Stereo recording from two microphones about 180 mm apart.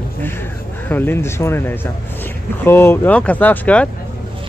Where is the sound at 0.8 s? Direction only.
10° left (ahead or behind).